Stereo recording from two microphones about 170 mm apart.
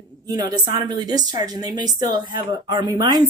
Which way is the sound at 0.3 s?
25° right (ahead or behind).